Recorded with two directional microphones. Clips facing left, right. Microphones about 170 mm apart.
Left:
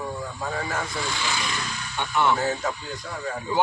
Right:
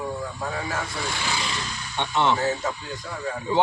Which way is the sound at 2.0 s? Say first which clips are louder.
Even; 25° right (ahead or behind).